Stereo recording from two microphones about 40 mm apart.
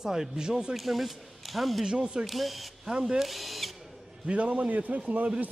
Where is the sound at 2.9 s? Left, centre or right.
Right.